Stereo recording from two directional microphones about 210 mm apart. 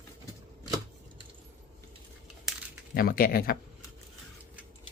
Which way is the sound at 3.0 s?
45° left (ahead or behind).